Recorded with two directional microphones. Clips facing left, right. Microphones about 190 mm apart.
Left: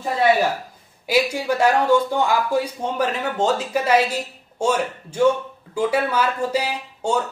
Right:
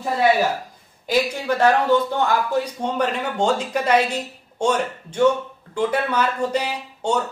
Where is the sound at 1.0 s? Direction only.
10° left (ahead or behind).